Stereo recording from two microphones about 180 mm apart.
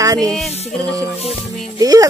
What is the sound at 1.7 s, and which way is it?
Speech, 20° right (ahead or behind).